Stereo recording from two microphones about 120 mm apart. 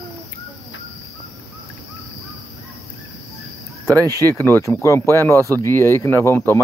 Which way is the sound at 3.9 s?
30° right (ahead or behind).